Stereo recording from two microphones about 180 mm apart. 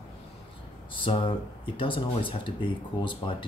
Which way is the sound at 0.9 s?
30° left (ahead or behind).